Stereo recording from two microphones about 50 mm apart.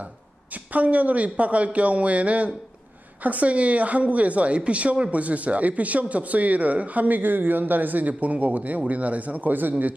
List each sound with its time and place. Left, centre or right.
0.7 s a woman's voice: right